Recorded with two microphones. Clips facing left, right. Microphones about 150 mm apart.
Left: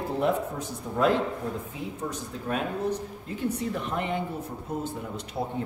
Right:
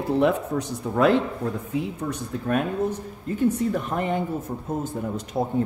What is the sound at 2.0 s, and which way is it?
Speech, 60° right (ahead or behind).